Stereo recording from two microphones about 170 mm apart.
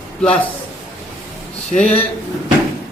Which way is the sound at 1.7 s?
10° left (ahead or behind).